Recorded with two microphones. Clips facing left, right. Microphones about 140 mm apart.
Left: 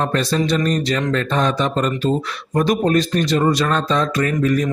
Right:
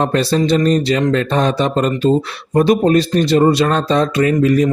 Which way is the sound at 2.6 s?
30° right (ahead or behind).